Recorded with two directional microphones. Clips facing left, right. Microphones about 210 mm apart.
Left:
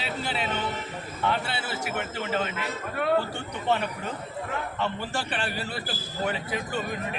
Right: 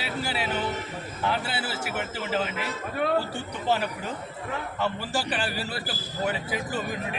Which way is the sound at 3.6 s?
5° right (ahead or behind).